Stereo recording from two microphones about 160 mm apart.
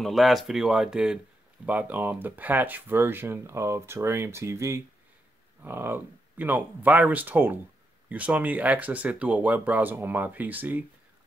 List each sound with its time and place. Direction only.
0.0 s speech: centre (ahead or behind)